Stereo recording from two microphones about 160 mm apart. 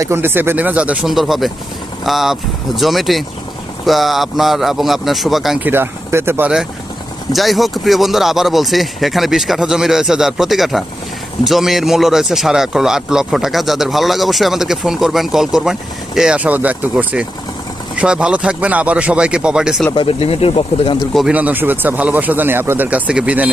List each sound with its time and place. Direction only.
0.0 s speech: 15° right (ahead or behind)
19.9 s speech: 35° left (ahead or behind)
21.1 s speech: centre (ahead or behind)